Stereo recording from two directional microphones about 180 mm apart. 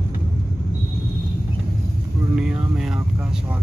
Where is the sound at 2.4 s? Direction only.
Centre (ahead or behind).